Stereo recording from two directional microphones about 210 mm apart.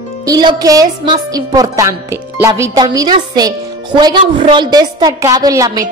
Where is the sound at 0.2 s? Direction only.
20° right (ahead or behind).